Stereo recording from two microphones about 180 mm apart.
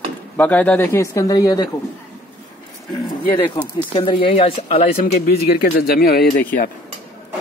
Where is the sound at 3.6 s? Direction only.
20° left (ahead or behind).